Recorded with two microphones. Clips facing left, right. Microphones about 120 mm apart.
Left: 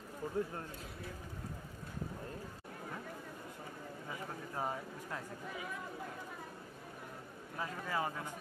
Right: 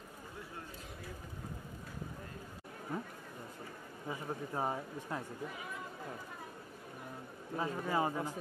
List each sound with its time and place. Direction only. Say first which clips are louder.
0.4 s speech: left 15 dB; 40° left (ahead or behind)
4.1 s speech: right 6 dB; 25° right (ahead or behind)
7.5 s speech: right 4 dB; 25° right (ahead or behind)